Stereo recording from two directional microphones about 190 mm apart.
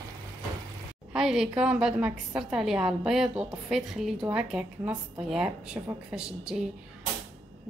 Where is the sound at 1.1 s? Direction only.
5° right (ahead or behind).